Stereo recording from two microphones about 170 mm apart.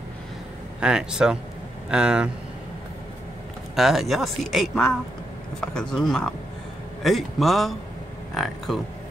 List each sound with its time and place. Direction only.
0.7 s speech: 5° right (ahead or behind)
3.7 s speech: centre (ahead or behind)